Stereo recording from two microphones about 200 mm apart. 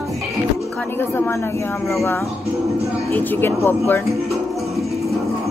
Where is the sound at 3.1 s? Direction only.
10° left (ahead or behind).